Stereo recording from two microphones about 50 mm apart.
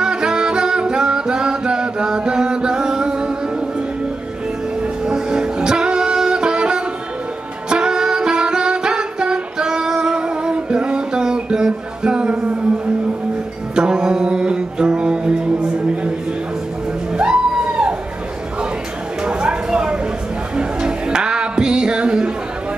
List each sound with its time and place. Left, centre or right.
0.0 s music: centre
5.0 s music: centre
13.7 s music: centre
17.2 s music: right
19.2 s a sound: centre
20.5 s music: centre